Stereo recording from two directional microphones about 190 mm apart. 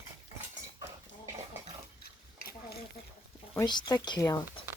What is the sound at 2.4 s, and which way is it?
Stir, 55° left (ahead or behind).